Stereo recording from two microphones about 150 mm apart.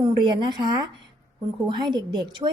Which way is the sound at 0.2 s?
30° right (ahead or behind).